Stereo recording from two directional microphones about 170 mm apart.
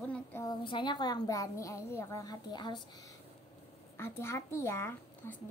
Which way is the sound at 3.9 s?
15° left (ahead or behind).